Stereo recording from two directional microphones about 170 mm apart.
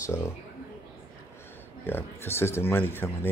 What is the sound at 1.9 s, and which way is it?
Speech, 15° left (ahead or behind).